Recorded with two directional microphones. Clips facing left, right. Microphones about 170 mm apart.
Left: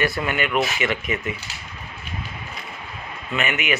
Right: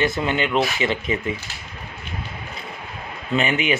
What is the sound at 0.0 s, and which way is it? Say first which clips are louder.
Speech: right 2 dB; 25° right (ahead or behind).